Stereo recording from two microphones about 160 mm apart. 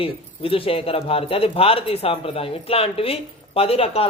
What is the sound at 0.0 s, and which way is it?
Speech, 35° left (ahead or behind).